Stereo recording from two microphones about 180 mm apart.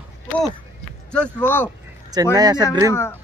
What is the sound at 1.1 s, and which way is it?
Speech, 10° left (ahead or behind).